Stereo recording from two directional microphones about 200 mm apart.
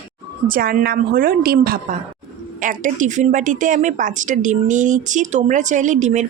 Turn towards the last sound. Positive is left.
turn(degrees=-35)  # may be behind; listen again after turning